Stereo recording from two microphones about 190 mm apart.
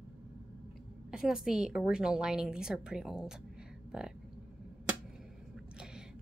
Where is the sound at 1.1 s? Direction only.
5° right (ahead or behind).